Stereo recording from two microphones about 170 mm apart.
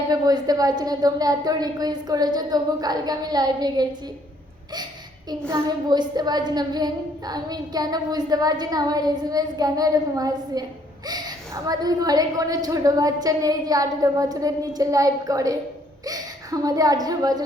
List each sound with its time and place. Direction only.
0.1 s speech: 20° right (ahead or behind)
5.3 s speech: 25° right (ahead or behind)